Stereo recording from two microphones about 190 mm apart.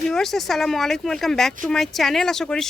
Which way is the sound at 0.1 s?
Centre (ahead or behind).